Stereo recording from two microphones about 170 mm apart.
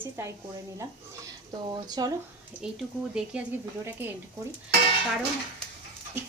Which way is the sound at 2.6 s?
5° right (ahead or behind).